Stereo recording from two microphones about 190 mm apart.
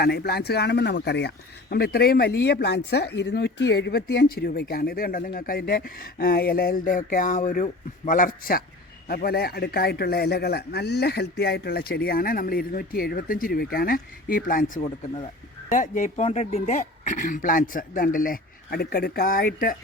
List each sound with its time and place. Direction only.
0.0 s speech: 55° left (ahead or behind)